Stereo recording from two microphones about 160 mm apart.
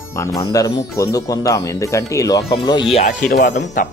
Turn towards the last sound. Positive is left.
turn(degrees=50)  # may be behind; listen again after turning